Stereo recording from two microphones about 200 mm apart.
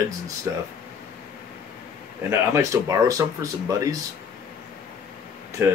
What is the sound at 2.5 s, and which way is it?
Speech, 15° right (ahead or behind).